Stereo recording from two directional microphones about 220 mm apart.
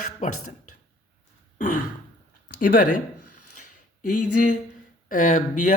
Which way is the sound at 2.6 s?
40° left (ahead or behind).